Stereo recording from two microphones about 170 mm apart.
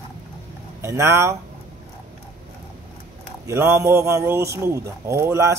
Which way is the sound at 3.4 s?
15° right (ahead or behind).